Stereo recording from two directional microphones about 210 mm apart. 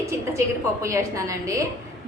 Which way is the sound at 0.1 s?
15° right (ahead or behind).